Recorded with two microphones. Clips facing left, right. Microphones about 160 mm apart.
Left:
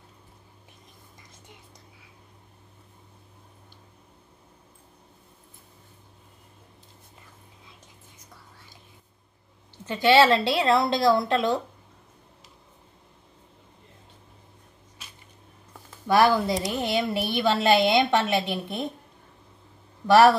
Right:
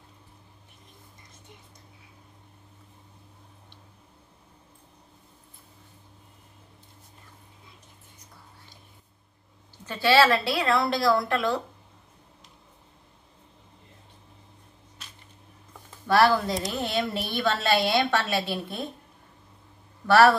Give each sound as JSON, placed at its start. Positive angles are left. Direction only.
{"t": 9.8, "sound": "a woman's voice", "side_deg": 20}
{"t": 16.1, "sound": "a woman's voice", "side_deg": 15}
{"t": 20.1, "sound": "a woman's voice", "side_deg": 15}